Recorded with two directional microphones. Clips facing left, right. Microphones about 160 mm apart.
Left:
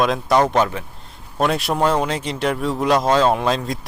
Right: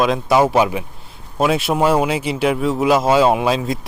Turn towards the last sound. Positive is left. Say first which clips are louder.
# right 2 dB
turn(degrees=-5)  # may be behind; listen again after turning